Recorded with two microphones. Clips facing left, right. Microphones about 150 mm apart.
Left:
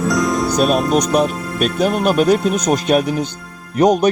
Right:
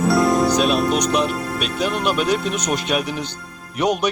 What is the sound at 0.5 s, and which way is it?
Speech, 45° left (ahead or behind).